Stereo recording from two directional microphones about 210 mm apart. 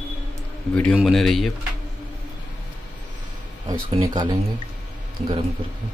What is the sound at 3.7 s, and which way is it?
Speech, 15° right (ahead or behind).